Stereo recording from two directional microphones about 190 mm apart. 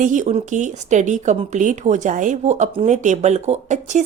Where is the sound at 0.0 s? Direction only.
40° right (ahead or behind).